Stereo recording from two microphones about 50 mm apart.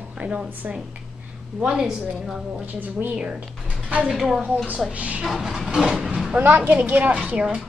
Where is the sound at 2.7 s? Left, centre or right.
Right.